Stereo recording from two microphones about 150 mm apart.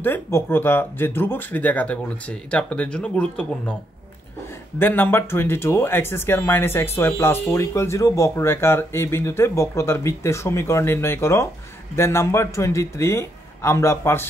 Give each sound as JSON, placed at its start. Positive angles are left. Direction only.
{"t": 0.0, "sound": "speech", "side_deg": 15}
{"t": 4.7, "sound": "speech", "side_deg": 15}